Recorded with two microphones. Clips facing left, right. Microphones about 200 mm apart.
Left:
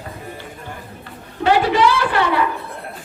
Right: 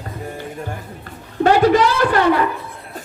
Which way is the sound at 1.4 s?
45° right (ahead or behind).